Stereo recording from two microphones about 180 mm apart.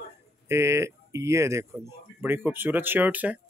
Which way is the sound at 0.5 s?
15° right (ahead or behind).